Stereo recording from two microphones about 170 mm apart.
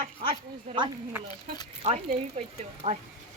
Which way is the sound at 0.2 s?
30° right (ahead or behind).